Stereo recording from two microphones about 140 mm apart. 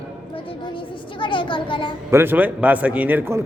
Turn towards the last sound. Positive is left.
turn(degrees=-15)  # may be behind; listen again after turning